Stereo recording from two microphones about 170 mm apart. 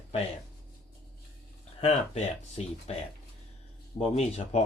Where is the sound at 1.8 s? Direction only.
40° left (ahead or behind).